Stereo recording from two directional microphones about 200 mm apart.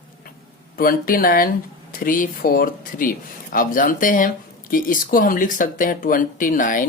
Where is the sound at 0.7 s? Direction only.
45° left (ahead or behind).